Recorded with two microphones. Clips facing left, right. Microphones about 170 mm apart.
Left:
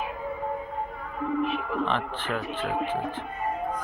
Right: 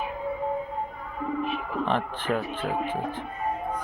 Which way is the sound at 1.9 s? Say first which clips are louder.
Right 3 dB; 45° right (ahead or behind).